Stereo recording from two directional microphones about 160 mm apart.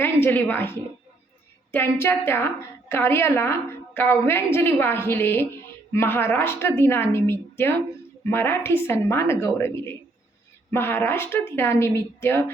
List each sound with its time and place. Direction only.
0.0 s a woman's voice: 10° left (ahead or behind)